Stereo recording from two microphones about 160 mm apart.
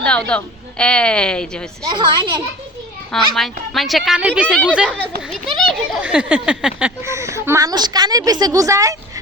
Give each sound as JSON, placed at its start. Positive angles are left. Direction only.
{"t": 0.0, "sound": "a woman's voice", "side_deg": 5}
{"t": 1.8, "sound": "a woman's voice", "side_deg": -30}
{"t": 3.1, "sound": "a woman's voice", "side_deg": 0}
{"t": 4.6, "sound": "a sound", "side_deg": -5}
{"t": 5.5, "sound": "a woman's voice", "side_deg": 5}
{"t": 6.0, "sound": "a sound", "side_deg": -10}
{"t": 7.0, "sound": "a woman's voice", "side_deg": -20}